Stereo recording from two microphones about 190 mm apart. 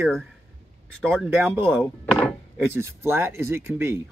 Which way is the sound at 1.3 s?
10° right (ahead or behind).